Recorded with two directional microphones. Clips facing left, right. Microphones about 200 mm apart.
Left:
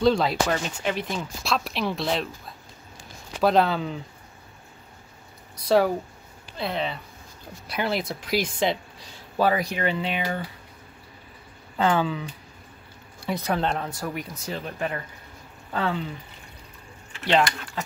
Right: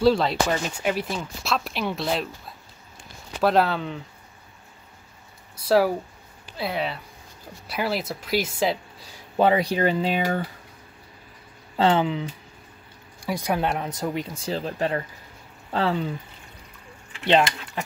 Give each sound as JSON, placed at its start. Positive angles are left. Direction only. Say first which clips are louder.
{"t": 0.0, "sound": "speech", "louder": "right 1 dB", "side_deg": 0}
{"t": 5.7, "sound": "speech", "louder": "right 1 dB", "side_deg": -5}
{"t": 9.4, "sound": "speech", "louder": "right 3 dB", "side_deg": -25}
{"t": 11.7, "sound": "speech", "louder": "right 2 dB", "side_deg": -25}
{"t": 13.2, "sound": "speech", "louder": "right 1 dB", "side_deg": -10}
{"t": 17.2, "sound": "speech", "louder": "right 2 dB", "side_deg": -20}